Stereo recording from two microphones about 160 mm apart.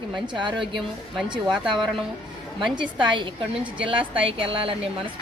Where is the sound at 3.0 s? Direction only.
30° right (ahead or behind).